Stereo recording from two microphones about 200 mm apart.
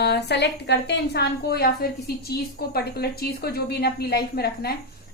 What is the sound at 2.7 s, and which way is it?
A woman's voice, 50° left (ahead or behind).